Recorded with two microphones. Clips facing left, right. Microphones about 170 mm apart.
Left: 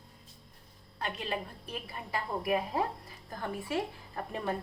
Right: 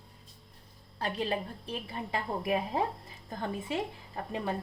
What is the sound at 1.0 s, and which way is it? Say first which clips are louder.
A woman's voice: right 4 dB; 35° right (ahead or behind).